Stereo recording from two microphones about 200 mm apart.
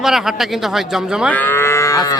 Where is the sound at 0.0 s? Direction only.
Centre (ahead or behind).